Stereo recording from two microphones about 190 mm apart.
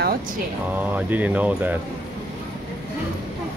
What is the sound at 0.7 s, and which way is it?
Speech, 10° right (ahead or behind).